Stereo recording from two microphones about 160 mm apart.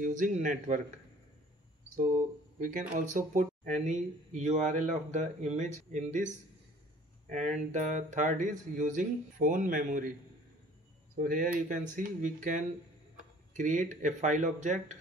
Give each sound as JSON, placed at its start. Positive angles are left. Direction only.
{"t": 0.0, "sound": "speech", "side_deg": -55}
{"t": 2.0, "sound": "speech", "side_deg": -55}
{"t": 7.2, "sound": "speech", "side_deg": -50}
{"t": 11.1, "sound": "speech", "side_deg": -60}